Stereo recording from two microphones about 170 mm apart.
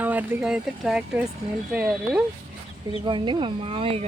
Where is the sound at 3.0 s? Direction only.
25° right (ahead or behind).